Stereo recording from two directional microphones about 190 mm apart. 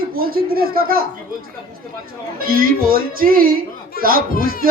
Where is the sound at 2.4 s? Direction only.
50° right (ahead or behind).